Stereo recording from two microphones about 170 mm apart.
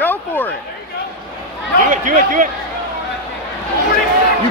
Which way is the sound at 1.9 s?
50° right (ahead or behind).